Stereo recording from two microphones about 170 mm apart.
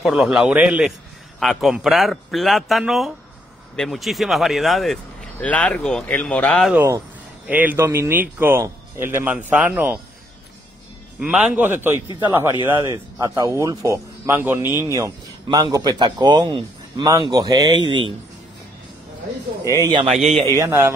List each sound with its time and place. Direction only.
0.0 s a man's voice: 5° right (ahead or behind)
6.7 s speech: 10° right (ahead or behind)
11.1 s speech: 5° right (ahead or behind)
15.4 s a man's voice: 30° right (ahead or behind)
19.6 s a man's voice: 20° right (ahead or behind)
20.5 s speech: 15° right (ahead or behind)